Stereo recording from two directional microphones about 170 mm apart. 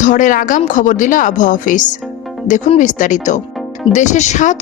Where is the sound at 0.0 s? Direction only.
50° left (ahead or behind).